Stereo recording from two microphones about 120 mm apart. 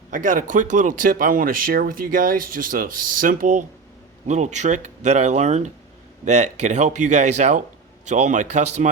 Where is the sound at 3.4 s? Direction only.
90° right.